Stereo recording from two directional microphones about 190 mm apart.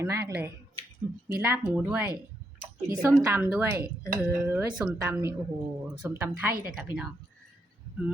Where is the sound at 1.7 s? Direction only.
10° right (ahead or behind).